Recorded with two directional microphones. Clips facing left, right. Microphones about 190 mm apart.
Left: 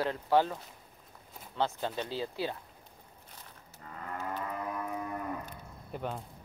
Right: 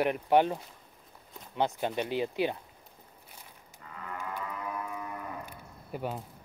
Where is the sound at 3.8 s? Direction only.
40° left (ahead or behind).